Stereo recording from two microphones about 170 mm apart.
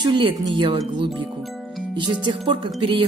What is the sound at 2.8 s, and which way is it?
Speech, 30° right (ahead or behind).